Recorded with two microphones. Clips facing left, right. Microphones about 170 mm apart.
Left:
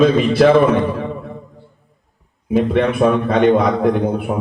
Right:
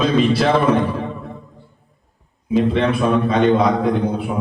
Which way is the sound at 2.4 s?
55° left (ahead or behind).